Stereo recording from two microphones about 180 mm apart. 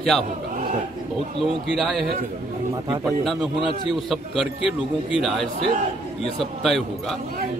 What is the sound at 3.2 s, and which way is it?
A man's voice, centre (ahead or behind).